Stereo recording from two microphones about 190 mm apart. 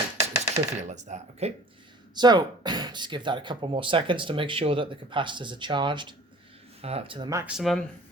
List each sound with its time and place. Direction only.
0.5 s coin: 40° right (ahead or behind)
2.1 s speech: 20° right (ahead or behind)
7.4 s speech: centre (ahead or behind)